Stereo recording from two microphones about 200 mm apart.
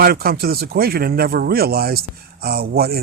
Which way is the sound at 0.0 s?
50° right (ahead or behind).